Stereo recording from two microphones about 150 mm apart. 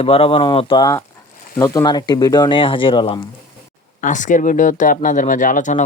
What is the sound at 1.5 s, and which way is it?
Speech, 20° left (ahead or behind).